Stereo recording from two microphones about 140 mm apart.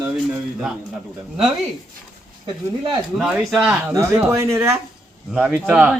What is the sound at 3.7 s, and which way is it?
Speech, 20° right (ahead or behind).